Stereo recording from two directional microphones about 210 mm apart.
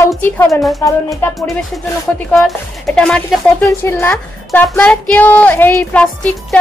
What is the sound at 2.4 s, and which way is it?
A woman's voice, centre (ahead or behind).